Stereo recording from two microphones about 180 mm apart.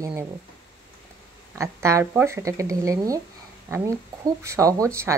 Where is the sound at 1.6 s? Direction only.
15° right (ahead or behind).